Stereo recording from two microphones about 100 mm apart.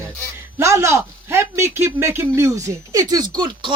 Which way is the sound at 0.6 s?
30° right (ahead or behind).